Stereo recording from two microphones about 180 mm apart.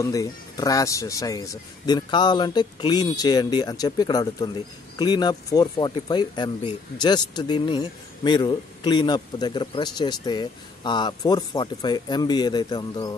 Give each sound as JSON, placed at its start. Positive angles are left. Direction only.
{"t": 0.0, "sound": "speech", "side_deg": 20}